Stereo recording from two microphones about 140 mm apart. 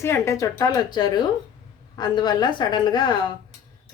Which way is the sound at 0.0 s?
20° left (ahead or behind).